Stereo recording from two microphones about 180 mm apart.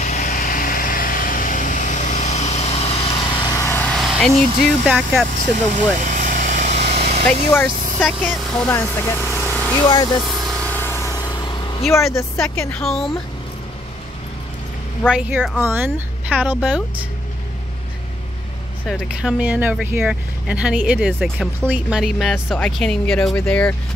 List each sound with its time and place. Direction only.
0.0 s vehicle: 45° left (ahead or behind)
3.4 s vehicle: 15° left (ahead or behind); by 4.3 s centre (ahead or behind)
4.8 s speech: 5° right (ahead or behind)
6.0 s vehicle: 45° right (ahead or behind)
7.2 s speech: 10° left (ahead or behind)
9.3 s vehicle: 5° left (ahead or behind); by 11.9 s 25° left (ahead or behind)
11.9 s speech: 15° left (ahead or behind)
15.0 s speech: 5° right (ahead or behind)
18.9 s speech: 5° right (ahead or behind)